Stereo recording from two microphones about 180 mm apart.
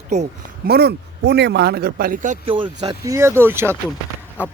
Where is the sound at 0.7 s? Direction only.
65° right (ahead or behind); by 2.4 s 45° right (ahead or behind).